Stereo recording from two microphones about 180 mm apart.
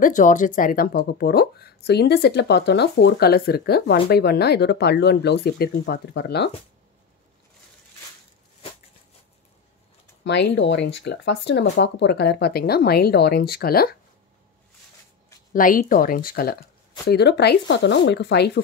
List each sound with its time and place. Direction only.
0.0 s speech: 45° left (ahead or behind); by 6.5 s 70° left (ahead or behind)
10.2 s speech: 70° left (ahead or behind)
15.5 s speech: 50° left (ahead or behind)
17.1 s speech: 65° left (ahead or behind)